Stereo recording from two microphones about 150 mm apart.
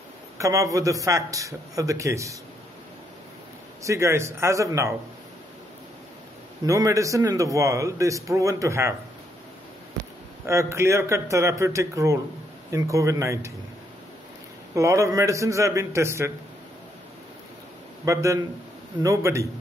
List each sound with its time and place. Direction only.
0.4 s a man's voice: 20° right (ahead or behind)
3.8 s a man's voice: 20° right (ahead or behind)
6.6 s a man's voice: 20° right (ahead or behind)
10.4 s a man's voice: 20° right (ahead or behind)
14.8 s a man's voice: 20° right (ahead or behind)
18.0 s a man's voice: 20° right (ahead or behind)